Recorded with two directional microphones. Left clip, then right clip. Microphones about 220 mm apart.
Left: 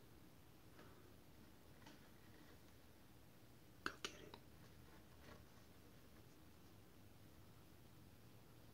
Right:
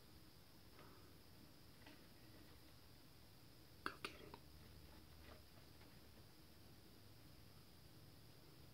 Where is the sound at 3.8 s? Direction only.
10° left (ahead or behind).